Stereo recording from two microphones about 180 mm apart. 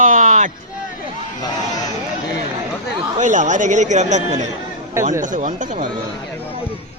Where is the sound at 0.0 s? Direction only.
45° right (ahead or behind).